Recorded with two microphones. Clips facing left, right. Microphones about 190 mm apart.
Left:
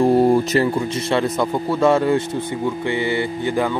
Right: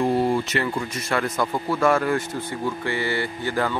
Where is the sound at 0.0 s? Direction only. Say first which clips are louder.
Left 7 dB; 40° left (ahead or behind).